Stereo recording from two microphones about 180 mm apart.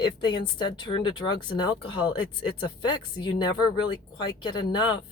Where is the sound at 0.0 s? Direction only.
25° left (ahead or behind).